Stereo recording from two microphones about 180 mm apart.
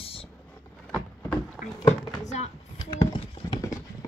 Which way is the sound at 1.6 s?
5° right (ahead or behind).